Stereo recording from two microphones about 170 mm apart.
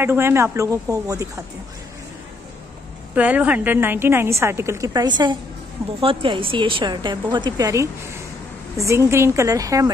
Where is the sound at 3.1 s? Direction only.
10° right (ahead or behind).